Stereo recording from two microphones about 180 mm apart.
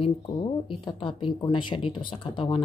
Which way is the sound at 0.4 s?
25° left (ahead or behind).